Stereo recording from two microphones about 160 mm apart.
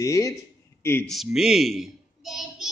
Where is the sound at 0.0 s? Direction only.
20° left (ahead or behind).